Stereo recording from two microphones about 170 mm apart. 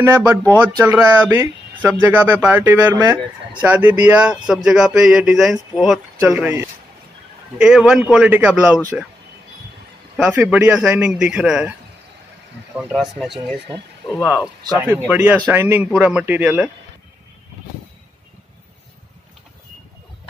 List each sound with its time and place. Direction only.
0.0 s speech: 15° right (ahead or behind)
10.1 s speech: 10° right (ahead or behind)
12.7 s speech: centre (ahead or behind)
14.2 s speech: 20° left (ahead or behind)
15.0 s speech: 10° right (ahead or behind)